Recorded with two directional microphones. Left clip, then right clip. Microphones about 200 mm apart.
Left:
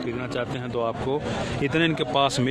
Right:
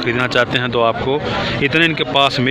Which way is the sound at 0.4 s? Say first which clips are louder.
Right 12 dB; 5° right (ahead or behind).